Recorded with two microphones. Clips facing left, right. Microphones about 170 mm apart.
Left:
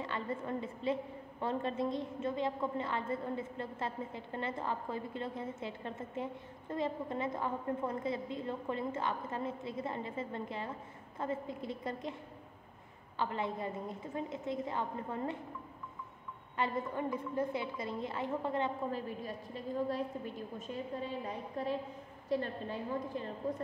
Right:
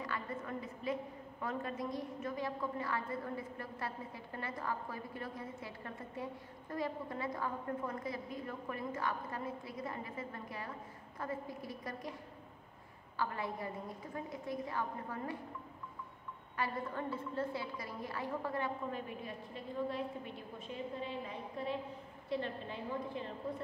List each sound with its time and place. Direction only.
0.0 s a woman's voice: 25° left (ahead or behind)
13.2 s a woman's voice: 20° left (ahead or behind)
16.5 s a woman's voice: 20° left (ahead or behind)
18.9 s a woman's voice: 35° left (ahead or behind)